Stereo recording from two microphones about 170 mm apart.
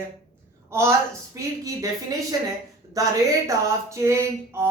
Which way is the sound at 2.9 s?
20° right (ahead or behind).